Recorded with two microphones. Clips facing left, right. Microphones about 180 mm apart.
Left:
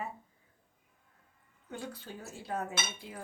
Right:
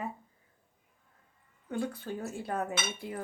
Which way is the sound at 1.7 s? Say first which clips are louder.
Right 8 dB; 55° right (ahead or behind).